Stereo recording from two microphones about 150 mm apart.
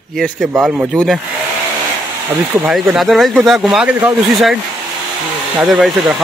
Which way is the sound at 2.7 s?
5° right (ahead or behind).